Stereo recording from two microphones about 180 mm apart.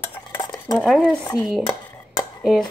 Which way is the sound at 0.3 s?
10° left (ahead or behind).